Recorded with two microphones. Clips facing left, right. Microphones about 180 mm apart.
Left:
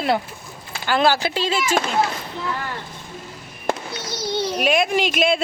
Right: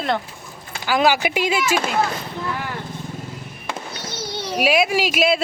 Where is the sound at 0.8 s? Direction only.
10° right (ahead or behind).